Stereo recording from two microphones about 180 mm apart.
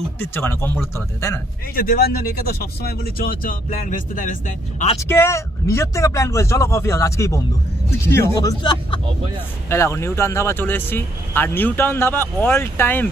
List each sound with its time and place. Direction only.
0.2 s speech: 10° left (ahead or behind)
1.8 s speech: 55° left (ahead or behind)
4.9 s speech: 15° left (ahead or behind)